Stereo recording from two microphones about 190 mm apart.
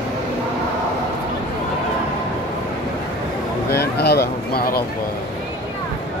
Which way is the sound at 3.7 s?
60° left (ahead or behind).